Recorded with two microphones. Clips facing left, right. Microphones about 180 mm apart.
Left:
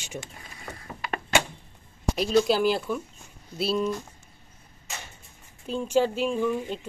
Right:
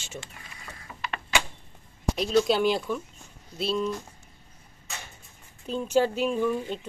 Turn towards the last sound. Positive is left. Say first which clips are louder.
# even
turn(degrees=0)  # may be behind; listen again after turning